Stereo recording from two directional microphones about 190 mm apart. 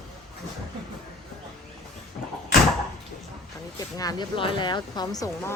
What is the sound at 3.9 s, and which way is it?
Speech, 20° left (ahead or behind).